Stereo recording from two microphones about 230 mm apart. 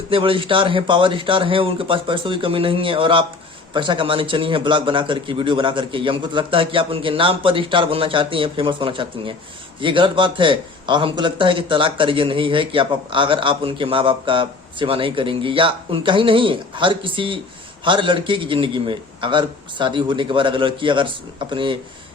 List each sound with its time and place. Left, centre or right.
0.1 s speech: right